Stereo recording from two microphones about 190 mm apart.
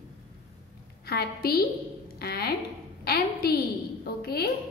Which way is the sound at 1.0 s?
55° left (ahead or behind).